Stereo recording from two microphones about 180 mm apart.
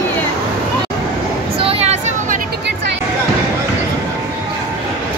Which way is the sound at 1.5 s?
35° right (ahead or behind).